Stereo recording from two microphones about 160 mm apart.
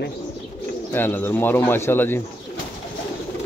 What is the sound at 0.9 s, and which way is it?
A man's voice, 15° left (ahead or behind).